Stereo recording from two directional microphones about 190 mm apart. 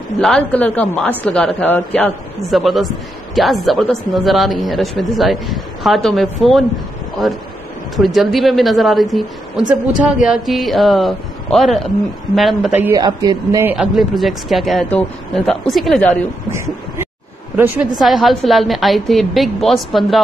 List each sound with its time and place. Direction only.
0.2 s a woman's voice: 5° left (ahead or behind)
12.7 s speech: 15° right (ahead or behind)
13.7 s speech: centre (ahead or behind)
17.9 s speech: centre (ahead or behind)